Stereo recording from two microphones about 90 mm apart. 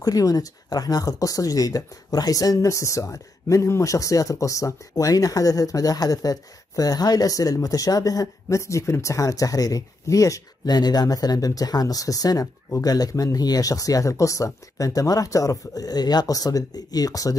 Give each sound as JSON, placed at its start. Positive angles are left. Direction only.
{"t": 0.0, "sound": "speech", "side_deg": 40}